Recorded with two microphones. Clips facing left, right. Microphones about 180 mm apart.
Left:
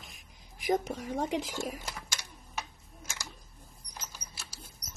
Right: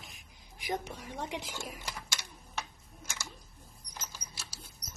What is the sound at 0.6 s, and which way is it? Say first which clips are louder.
Speech: left 7 dB; 45° left (ahead or behind).